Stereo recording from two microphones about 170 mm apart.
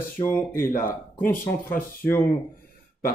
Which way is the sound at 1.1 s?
15° left (ahead or behind).